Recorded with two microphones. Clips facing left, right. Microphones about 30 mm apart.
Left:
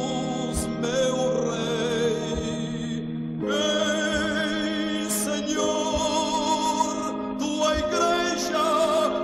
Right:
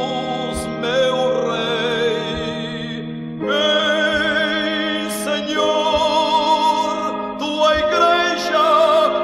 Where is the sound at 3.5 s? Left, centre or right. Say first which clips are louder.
Right 8 dB; right.